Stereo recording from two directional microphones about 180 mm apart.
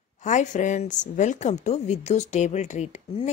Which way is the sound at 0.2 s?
40° left (ahead or behind).